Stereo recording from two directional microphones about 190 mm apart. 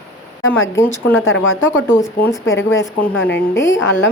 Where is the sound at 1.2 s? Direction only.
90° left.